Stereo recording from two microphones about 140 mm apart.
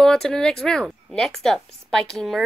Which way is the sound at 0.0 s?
5° left (ahead or behind).